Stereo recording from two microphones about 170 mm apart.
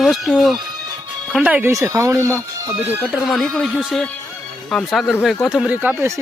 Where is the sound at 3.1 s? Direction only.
Centre (ahead or behind).